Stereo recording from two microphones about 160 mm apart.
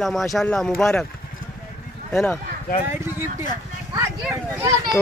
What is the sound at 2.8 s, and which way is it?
Speech, 15° right (ahead or behind).